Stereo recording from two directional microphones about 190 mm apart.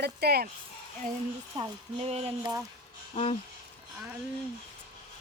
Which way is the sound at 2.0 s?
30° right (ahead or behind).